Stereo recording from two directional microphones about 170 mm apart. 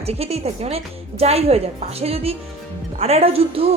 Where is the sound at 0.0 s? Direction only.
35° right (ahead or behind).